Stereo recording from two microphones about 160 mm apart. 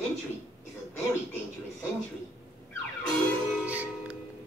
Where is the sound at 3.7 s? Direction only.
10° right (ahead or behind).